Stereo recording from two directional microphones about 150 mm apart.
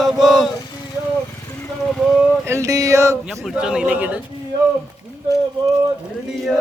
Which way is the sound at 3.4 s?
5° right (ahead or behind).